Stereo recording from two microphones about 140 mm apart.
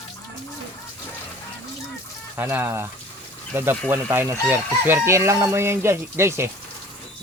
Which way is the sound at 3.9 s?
15° right (ahead or behind).